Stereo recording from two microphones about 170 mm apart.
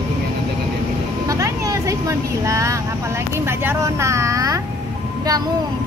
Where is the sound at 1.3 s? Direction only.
20° right (ahead or behind).